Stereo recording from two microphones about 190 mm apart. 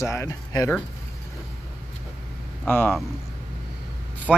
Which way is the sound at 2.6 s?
5° left (ahead or behind).